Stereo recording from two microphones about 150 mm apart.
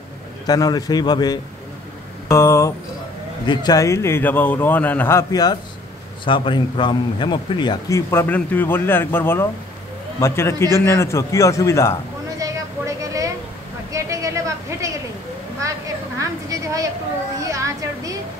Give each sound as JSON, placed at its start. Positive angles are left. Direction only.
{"t": 0.5, "sound": "a man's voice", "side_deg": 25}
{"t": 8.1, "sound": "a man's voice", "side_deg": 15}
{"t": 12.4, "sound": "vehicle", "side_deg": -20}
{"t": 13.9, "sound": "a sound", "side_deg": -20}